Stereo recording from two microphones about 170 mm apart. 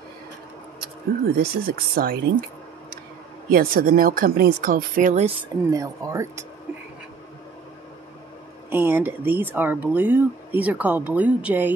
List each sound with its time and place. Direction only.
1.3 s speech: 65° right (ahead or behind)
3.4 s speech: 60° right (ahead or behind)
5.7 s speech: 20° right (ahead or behind)
8.6 s speech: 10° right (ahead or behind)